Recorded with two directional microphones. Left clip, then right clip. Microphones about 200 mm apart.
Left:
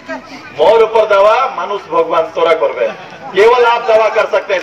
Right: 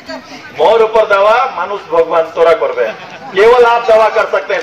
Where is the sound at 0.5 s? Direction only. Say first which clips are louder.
Even; 40° left (ahead or behind).